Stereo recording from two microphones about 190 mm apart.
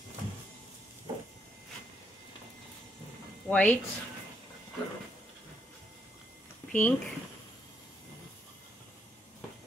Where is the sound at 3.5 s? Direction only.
5° left (ahead or behind).